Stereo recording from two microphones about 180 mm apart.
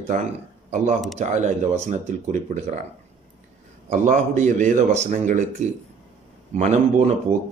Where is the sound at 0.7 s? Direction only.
40° right (ahead or behind).